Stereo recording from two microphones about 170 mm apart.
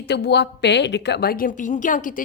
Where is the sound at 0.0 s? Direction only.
75° left (ahead or behind).